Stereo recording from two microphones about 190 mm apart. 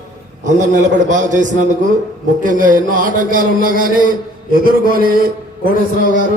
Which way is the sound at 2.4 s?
45° right (ahead or behind).